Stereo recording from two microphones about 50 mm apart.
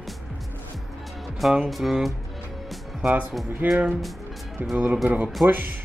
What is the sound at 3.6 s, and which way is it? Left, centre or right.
Speech, right.